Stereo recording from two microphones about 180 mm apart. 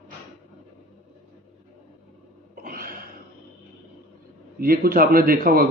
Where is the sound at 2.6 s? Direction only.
55° right (ahead or behind).